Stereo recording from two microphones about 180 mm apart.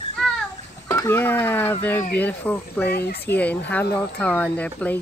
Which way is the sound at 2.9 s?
65° left (ahead or behind).